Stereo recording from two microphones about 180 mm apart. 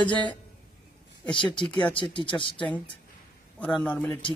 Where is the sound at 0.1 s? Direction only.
10° left (ahead or behind).